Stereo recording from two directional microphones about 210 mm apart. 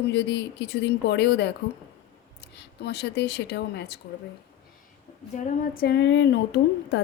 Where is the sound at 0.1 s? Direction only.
55° left (ahead or behind).